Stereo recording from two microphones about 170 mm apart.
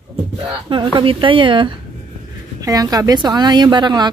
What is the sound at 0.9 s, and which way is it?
Speech, 30° right (ahead or behind).